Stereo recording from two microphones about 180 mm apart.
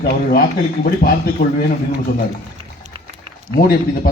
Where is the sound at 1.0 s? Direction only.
55° left (ahead or behind).